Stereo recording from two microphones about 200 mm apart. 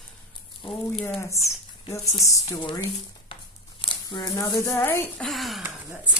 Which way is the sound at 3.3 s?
25° left (ahead or behind).